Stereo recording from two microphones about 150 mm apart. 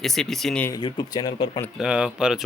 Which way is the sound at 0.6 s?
25° left (ahead or behind).